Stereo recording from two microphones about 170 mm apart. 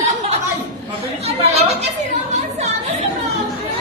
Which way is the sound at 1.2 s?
40° right (ahead or behind).